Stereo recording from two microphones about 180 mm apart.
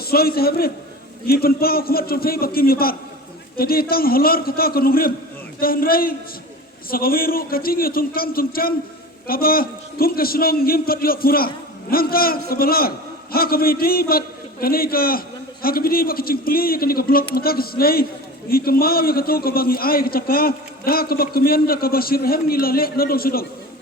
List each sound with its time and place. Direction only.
0.0 s a man's voice: 60° left (ahead or behind)